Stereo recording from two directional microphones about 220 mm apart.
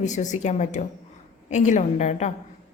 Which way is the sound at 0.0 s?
35° left (ahead or behind).